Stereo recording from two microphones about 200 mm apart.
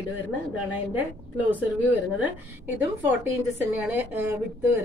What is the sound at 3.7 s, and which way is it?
A woman's voice, 10° right (ahead or behind).